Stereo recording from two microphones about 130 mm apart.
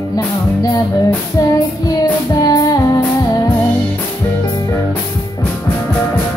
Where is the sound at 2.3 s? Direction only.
30° left (ahead or behind).